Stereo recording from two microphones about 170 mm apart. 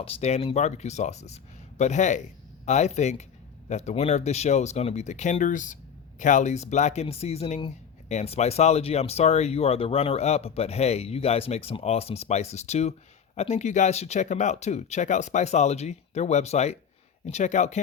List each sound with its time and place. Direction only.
0.0 s speech: 35° left (ahead or behind)